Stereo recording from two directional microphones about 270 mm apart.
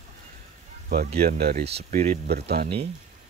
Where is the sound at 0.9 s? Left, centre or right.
Right.